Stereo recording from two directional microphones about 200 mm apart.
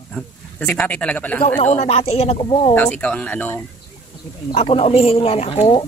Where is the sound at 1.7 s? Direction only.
30° left (ahead or behind).